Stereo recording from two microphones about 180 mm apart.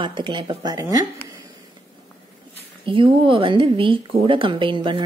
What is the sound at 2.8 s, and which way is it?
A woman's voice, 30° right (ahead or behind).